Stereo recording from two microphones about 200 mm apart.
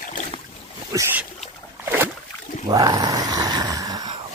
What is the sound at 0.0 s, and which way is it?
Boat, 40° left (ahead or behind).